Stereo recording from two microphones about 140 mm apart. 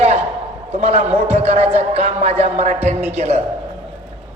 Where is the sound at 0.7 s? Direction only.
50° right (ahead or behind).